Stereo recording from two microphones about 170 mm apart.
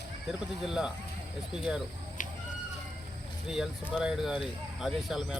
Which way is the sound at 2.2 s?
50° left (ahead or behind).